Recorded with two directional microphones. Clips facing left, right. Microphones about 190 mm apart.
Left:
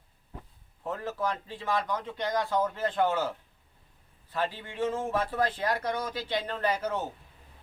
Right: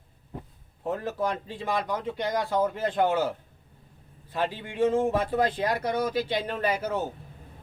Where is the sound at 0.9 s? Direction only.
15° right (ahead or behind).